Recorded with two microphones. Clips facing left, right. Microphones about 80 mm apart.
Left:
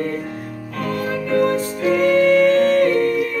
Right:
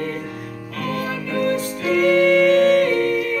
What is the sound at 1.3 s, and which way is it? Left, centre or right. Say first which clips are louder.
Music: left 4 dB; left.